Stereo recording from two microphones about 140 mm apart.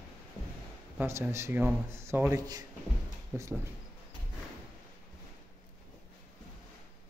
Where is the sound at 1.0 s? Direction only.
20° right (ahead or behind).